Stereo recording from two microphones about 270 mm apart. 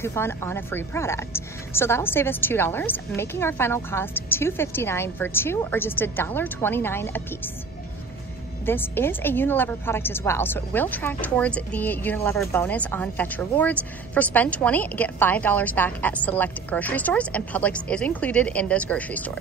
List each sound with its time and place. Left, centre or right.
0.0 s speech: centre
8.6 s speech: centre